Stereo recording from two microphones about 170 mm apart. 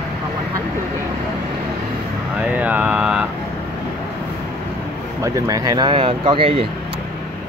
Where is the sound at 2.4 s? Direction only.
10° right (ahead or behind).